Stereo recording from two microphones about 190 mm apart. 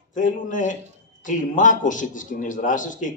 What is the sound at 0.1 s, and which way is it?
A man's voice, 45° left (ahead or behind).